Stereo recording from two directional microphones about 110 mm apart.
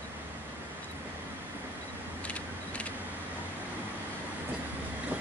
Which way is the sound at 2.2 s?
10° left (ahead or behind).